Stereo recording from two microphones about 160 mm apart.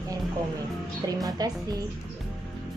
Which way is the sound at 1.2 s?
25° right (ahead or behind).